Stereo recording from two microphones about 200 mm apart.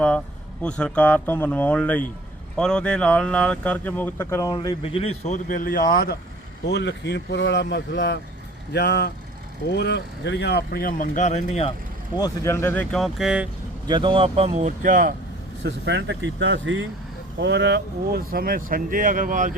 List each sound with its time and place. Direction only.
0.6 s speech: 5° left (ahead or behind); by 6.1 s 45° left (ahead or behind)
6.7 s speech: 55° left (ahead or behind); by 11.7 s 35° left (ahead or behind)
12.1 s speech: 15° left (ahead or behind); by 13.5 s 5° right (ahead or behind)
13.8 s speech: 25° right (ahead or behind); by 15.1 s 40° right (ahead or behind)
15.6 s speech: 65° right (ahead or behind)
17.4 s speech: 60° right (ahead or behind); by 19.5 s 40° right (ahead or behind)